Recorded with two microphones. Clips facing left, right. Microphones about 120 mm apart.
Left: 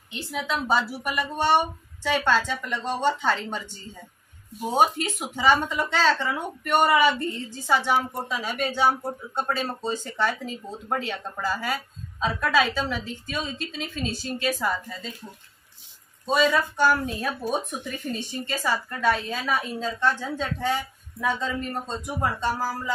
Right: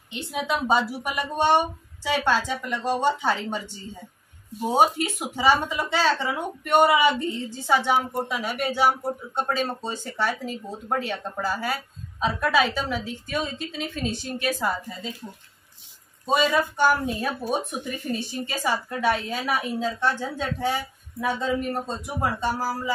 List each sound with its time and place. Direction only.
0.3 s speech: 20° right (ahead or behind)
16.3 s speech: 5° right (ahead or behind)